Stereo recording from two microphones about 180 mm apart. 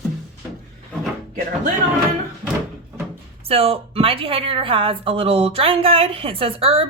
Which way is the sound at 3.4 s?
35° right (ahead or behind).